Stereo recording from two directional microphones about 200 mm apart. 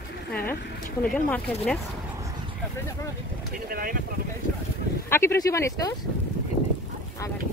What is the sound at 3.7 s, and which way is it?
Speech, 45° right (ahead or behind).